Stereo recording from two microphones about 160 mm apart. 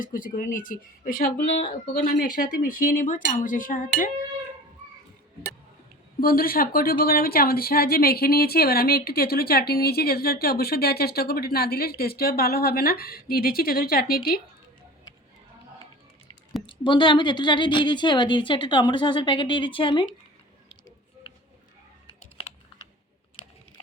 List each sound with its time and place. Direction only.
0.0 s speech: 60° left (ahead or behind)
6.1 s a woman's voice: 65° left (ahead or behind)
16.6 s a woman's voice: 30° left (ahead or behind)